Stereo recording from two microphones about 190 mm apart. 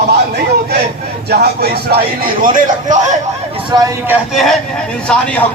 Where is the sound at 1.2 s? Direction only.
55° right (ahead or behind).